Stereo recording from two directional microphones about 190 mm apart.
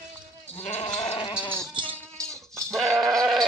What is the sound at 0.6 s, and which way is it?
Goat, 30° left (ahead or behind).